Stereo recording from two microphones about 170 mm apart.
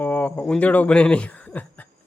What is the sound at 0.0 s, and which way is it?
Speech, 10° left (ahead or behind).